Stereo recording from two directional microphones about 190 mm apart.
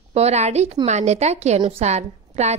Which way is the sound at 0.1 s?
35° right (ahead or behind).